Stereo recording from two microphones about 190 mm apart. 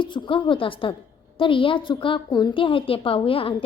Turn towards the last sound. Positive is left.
turn(degrees=30)  # may be behind; listen again after turning